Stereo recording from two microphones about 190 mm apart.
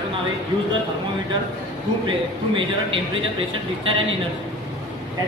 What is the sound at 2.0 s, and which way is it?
Speech, 25° right (ahead or behind).